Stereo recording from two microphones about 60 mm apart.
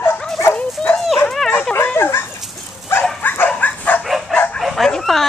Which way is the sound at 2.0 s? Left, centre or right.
Left.